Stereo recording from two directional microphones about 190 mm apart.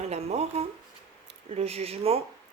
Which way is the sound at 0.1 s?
35° right (ahead or behind).